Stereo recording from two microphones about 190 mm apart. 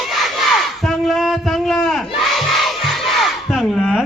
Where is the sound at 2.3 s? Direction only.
Centre (ahead or behind).